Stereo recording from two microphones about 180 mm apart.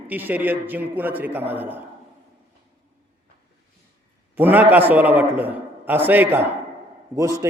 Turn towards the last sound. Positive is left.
turn(degrees=-15)  # may be behind; listen again after turning